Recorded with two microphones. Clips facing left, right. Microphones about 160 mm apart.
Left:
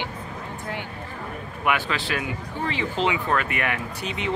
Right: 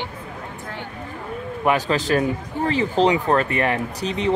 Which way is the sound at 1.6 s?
35° right (ahead or behind).